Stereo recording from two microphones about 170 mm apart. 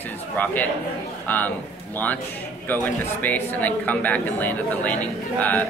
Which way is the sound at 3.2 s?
10° left (ahead or behind).